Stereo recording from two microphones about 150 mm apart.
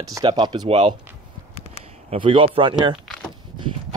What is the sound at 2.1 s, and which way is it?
Speech, 35° right (ahead or behind).